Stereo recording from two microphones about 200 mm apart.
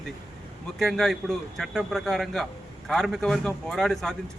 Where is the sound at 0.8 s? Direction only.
Centre (ahead or behind).